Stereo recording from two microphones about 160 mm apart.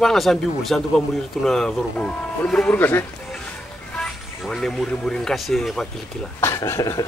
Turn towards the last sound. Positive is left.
turn(degrees=20)  # may be behind; listen again after turning